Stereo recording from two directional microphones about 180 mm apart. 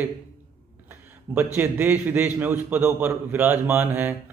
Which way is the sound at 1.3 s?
10° right (ahead or behind).